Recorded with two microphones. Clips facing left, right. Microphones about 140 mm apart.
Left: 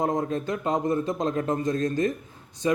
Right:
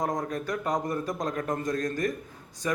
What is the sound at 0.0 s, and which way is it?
Speech, 25° left (ahead or behind).